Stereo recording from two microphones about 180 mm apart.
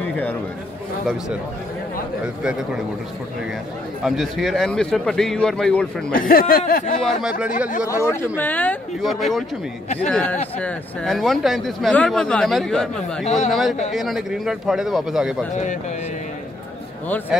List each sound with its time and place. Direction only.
0.0 s chatter: 10° left (ahead or behind)
4.0 s speech: centre (ahead or behind)
6.1 s speech: 55° left (ahead or behind)
7.0 s speech: 5° right (ahead or behind)
7.8 s speech: 15° left (ahead or behind)
13.2 s a man's voice: 40° left (ahead or behind)
13.5 s speech: centre (ahead or behind)
15.5 s speech: 40° left (ahead or behind)